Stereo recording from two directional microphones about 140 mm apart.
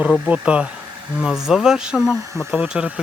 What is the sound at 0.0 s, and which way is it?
Speech, 10° right (ahead or behind).